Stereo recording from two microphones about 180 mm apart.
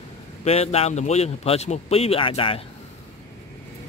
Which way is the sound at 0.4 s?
35° left (ahead or behind).